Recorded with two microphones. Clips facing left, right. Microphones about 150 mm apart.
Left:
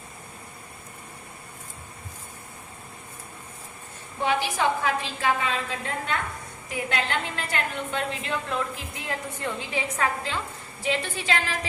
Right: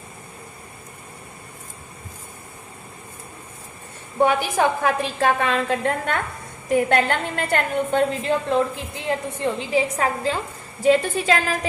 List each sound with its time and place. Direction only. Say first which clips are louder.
4.2 s a woman's voice: right 6 dB; 50° right (ahead or behind)
7.9 s a woman's voice: right 9 dB; 40° right (ahead or behind)